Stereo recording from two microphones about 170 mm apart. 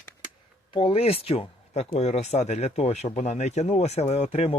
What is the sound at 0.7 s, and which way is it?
Speech, 30° left (ahead or behind).